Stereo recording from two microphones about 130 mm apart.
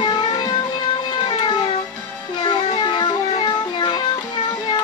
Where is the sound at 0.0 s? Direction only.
30° left (ahead or behind).